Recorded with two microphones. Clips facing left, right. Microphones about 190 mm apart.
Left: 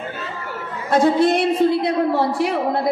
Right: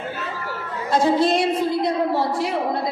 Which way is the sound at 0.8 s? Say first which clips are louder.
Left 3 dB; 60° left (ahead or behind).